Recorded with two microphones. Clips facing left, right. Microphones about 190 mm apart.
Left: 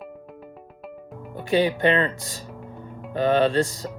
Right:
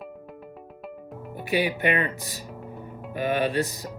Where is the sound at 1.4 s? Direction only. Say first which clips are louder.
Left 4 dB; 10° right (ahead or behind).